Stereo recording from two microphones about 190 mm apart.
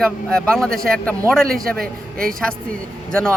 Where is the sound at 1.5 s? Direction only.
50° right (ahead or behind).